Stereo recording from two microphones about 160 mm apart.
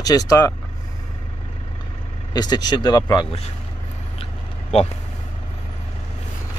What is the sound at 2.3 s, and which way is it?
Speech, 25° left (ahead or behind).